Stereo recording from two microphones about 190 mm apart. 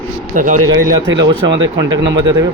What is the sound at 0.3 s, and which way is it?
Speech, 45° right (ahead or behind).